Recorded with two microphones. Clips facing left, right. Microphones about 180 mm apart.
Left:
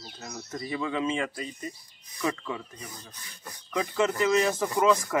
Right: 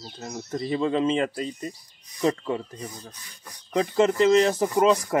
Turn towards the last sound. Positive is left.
turn(degrees=-30)  # may be behind; listen again after turning